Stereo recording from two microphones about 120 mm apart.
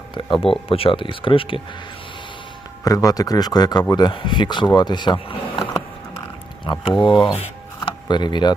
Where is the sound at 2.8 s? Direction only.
30° left (ahead or behind).